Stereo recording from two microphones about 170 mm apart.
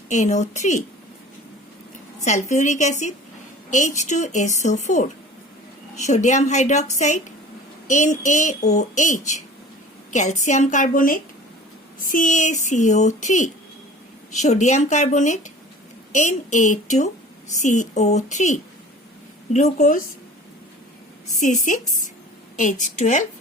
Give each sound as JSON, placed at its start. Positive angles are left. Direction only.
{"t": 0.1, "sound": "a woman's voice", "side_deg": 45}
{"t": 2.2, "sound": "a woman's voice", "side_deg": 45}
{"t": 21.4, "sound": "a woman's voice", "side_deg": 45}